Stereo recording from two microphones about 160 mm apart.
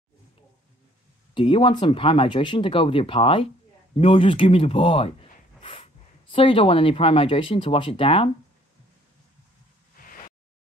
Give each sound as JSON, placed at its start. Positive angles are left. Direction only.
{"t": 1.3, "sound": "speech", "side_deg": 30}